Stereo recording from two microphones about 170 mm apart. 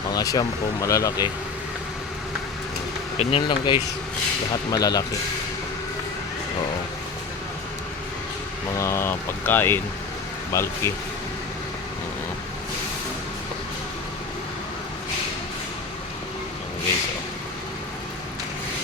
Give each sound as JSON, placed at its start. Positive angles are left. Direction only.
{"t": 0.1, "sound": "speech", "side_deg": 20}
{"t": 3.2, "sound": "speech", "side_deg": 35}
{"t": 4.7, "sound": "speech", "side_deg": 20}
{"t": 8.7, "sound": "speech", "side_deg": 15}